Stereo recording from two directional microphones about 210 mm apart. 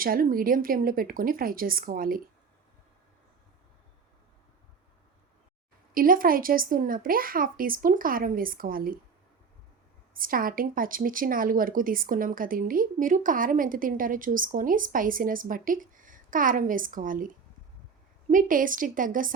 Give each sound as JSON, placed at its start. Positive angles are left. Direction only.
{"t": 0.0, "sound": "speech", "side_deg": -45}
{"t": 5.9, "sound": "speech", "side_deg": -40}
{"t": 10.2, "sound": "speech", "side_deg": -40}